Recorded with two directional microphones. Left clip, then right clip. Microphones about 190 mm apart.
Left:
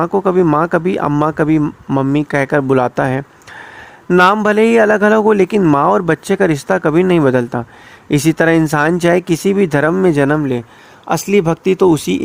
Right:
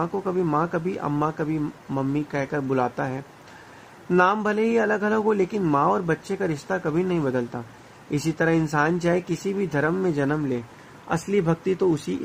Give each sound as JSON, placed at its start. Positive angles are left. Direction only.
{"t": 0.0, "sound": "speech", "side_deg": 55}
{"t": 11.1, "sound": "speech", "side_deg": 60}